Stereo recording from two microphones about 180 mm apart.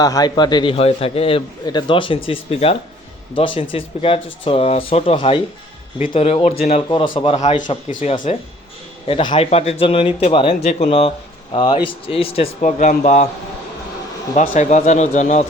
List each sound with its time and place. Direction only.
0.0 s a man's voice: 20° left (ahead or behind); by 6.8 s 35° left (ahead or behind)
6.8 s a man's voice: 25° left (ahead or behind)
7.3 s a man's voice: 40° left (ahead or behind)
9.0 s a man's voice: 30° left (ahead or behind)
14.3 s a man's voice: 45° left (ahead or behind)